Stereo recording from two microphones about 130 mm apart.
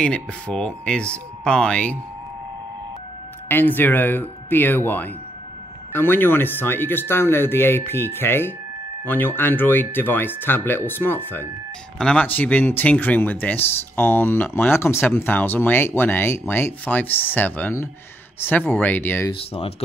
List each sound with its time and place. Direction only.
0.0 s speech: 5° left (ahead or behind)
3.4 s speech: 15° left (ahead or behind)
19.3 s speech: 50° left (ahead or behind)